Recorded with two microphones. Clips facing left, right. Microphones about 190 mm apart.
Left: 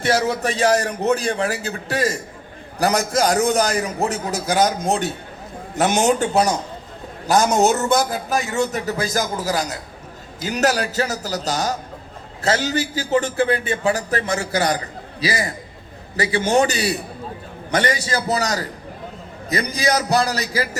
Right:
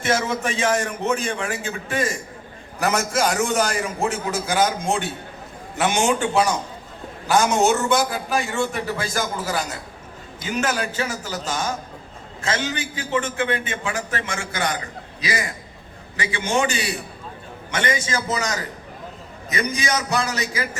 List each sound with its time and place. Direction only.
0.0 s a man's voice: 35° left (ahead or behind)